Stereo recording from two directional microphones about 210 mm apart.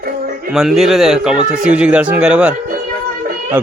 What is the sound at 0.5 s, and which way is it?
A man's voice, centre (ahead or behind).